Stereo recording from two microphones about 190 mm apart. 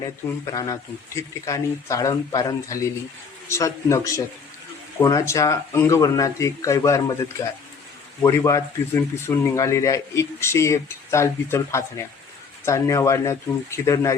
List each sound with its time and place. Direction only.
0.0 s speech: 20° left (ahead or behind)